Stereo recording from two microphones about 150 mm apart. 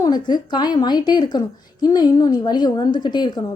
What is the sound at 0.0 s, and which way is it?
A woman's voice, 25° left (ahead or behind).